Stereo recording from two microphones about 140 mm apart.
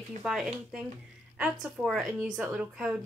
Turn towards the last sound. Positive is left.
turn(degrees=-5)  # may be behind; listen again after turning